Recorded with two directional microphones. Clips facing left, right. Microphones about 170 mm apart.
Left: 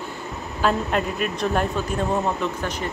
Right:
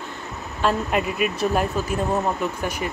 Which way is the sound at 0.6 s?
5° right (ahead or behind).